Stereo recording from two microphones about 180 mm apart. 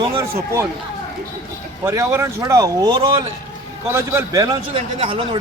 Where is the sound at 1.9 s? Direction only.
15° right (ahead or behind).